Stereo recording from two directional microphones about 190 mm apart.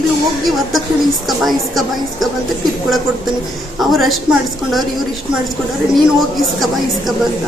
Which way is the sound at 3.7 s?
Centre (ahead or behind).